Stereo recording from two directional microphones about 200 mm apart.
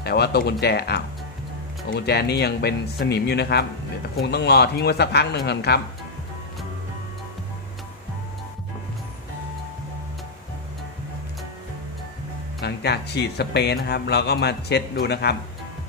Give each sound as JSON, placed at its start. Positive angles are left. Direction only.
{"t": 0.0, "sound": "speech", "side_deg": 55}
{"t": 12.5, "sound": "speech", "side_deg": 55}